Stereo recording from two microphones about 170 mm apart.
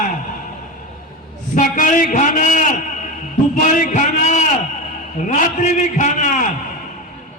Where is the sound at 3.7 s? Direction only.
50° left (ahead or behind).